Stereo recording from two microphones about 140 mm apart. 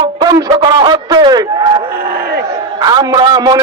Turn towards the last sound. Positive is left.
turn(degrees=-30)  # may be behind; listen again after turning